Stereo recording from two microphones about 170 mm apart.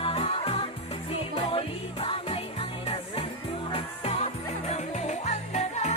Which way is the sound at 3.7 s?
35° left (ahead or behind).